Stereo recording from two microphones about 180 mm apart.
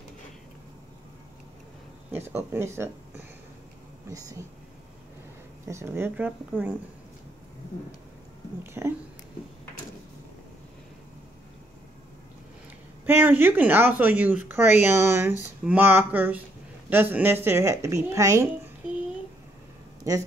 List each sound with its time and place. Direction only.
2.1 s speech: 10° right (ahead or behind)
5.7 s speech: 15° right (ahead or behind)
8.8 s speech: 10° right (ahead or behind)
13.0 s speech: 10° right (ahead or behind)
20.0 s speech: 20° right (ahead or behind)